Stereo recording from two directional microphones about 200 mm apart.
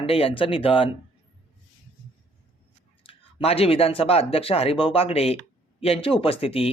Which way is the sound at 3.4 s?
30° left (ahead or behind).